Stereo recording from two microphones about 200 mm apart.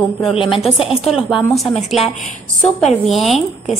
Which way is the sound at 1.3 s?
Centre (ahead or behind).